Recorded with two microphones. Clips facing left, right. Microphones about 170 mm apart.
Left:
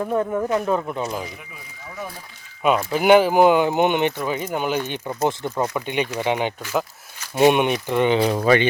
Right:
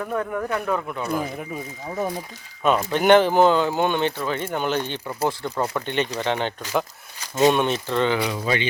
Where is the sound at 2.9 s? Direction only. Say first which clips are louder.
Left 1 dB; 10° left (ahead or behind).